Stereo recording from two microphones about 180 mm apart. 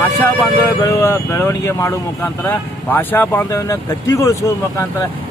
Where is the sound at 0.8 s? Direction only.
15° left (ahead or behind).